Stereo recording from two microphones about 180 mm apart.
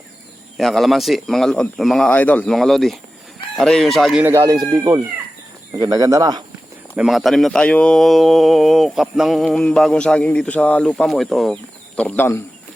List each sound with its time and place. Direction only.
0.5 s speech: centre (ahead or behind)
4.3 s speech: 20° right (ahead or behind)
6.9 s speech: centre (ahead or behind)